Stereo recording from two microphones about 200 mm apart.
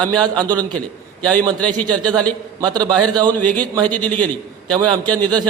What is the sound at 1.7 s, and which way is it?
A man's voice, 20° right (ahead or behind).